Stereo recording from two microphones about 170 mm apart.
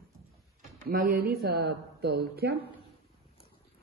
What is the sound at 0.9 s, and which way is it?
Speech, 60° right (ahead or behind).